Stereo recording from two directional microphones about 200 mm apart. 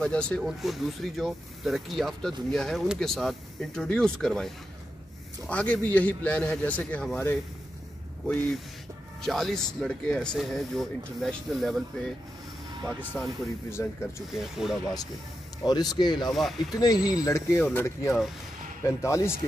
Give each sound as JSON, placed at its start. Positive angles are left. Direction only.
{"t": 0.0, "sound": "a man's voice", "side_deg": 5}
{"t": 9.2, "sound": "speech", "side_deg": 0}
{"t": 13.1, "sound": "a man's voice", "side_deg": 10}
{"t": 14.3, "sound": "speech", "side_deg": 0}
{"t": 15.6, "sound": "a man's voice", "side_deg": 20}